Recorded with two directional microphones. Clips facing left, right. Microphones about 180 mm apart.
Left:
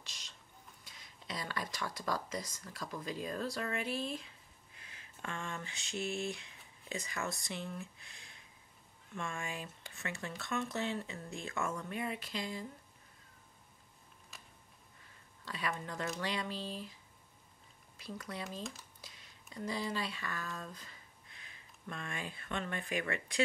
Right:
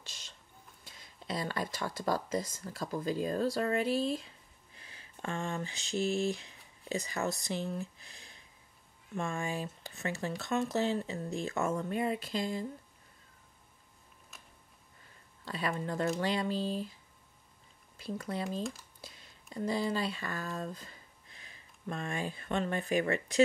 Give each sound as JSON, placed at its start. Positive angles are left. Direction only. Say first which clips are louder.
{"t": 1.2, "sound": "speech", "louder": "right 6 dB", "side_deg": -30}
{"t": 14.3, "sound": "a sound", "louder": "even", "side_deg": 0}
{"t": 15.4, "sound": "speech", "louder": "right 5 dB", "side_deg": -35}
{"t": 17.9, "sound": "speech", "louder": "right 7 dB", "side_deg": -25}
{"t": 18.6, "sound": "speech", "louder": "right 7 dB", "side_deg": 0}
{"t": 19.5, "sound": "speech", "louder": "right 6 dB", "side_deg": -30}